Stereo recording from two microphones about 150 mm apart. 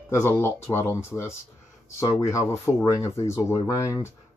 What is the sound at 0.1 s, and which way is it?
Speech, 15° left (ahead or behind).